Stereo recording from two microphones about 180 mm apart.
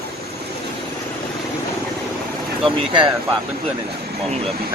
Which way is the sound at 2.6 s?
25° right (ahead or behind).